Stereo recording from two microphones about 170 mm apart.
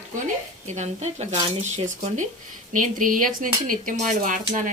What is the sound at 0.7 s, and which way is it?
Speech, 40° right (ahead or behind).